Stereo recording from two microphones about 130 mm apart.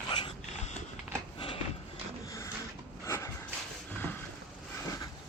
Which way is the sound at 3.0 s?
25° left (ahead or behind).